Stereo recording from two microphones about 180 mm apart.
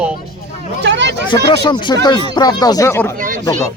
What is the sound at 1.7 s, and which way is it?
Speech, 25° left (ahead or behind).